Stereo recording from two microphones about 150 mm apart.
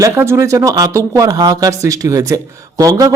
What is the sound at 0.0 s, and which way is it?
Speech, 20° right (ahead or behind).